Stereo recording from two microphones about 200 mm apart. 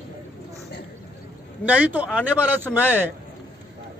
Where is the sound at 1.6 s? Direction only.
10° right (ahead or behind).